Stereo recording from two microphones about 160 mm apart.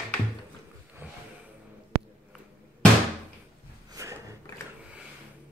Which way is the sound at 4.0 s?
20° right (ahead or behind).